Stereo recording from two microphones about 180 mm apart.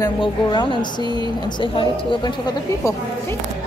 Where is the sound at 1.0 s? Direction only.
25° right (ahead or behind).